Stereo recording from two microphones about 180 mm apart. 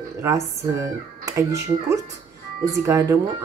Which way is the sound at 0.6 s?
15° right (ahead or behind).